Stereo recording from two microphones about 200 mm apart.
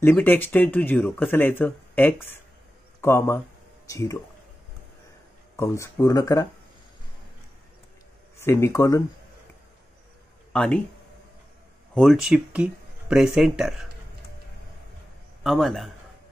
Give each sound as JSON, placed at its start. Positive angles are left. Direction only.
{"t": 0.0, "sound": "speech", "side_deg": 10}
{"t": 5.6, "sound": "speech", "side_deg": 15}
{"t": 8.4, "sound": "speech", "side_deg": 15}
{"t": 10.5, "sound": "speech", "side_deg": 5}
{"t": 11.9, "sound": "speech", "side_deg": 0}
{"t": 15.4, "sound": "a man's voice", "side_deg": 0}